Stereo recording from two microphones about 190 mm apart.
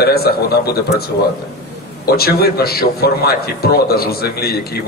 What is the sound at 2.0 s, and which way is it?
A man's voice, 55° left (ahead or behind).